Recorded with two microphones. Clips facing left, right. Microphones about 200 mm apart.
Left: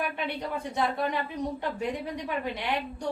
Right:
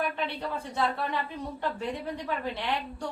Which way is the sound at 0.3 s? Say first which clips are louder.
Left 1 dB; 15° left (ahead or behind).